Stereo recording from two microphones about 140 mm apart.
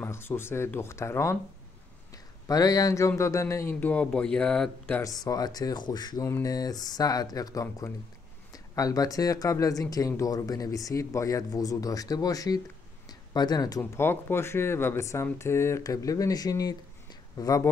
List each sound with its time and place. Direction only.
0.0 s speech: 15° left (ahead or behind)
2.4 s speech: 25° left (ahead or behind); by 5.0 s 10° left (ahead or behind)
5.0 s speech: 25° left (ahead or behind)